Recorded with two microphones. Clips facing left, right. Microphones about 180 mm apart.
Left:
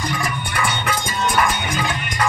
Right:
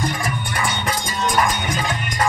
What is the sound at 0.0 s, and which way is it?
Music, 45° right (ahead or behind).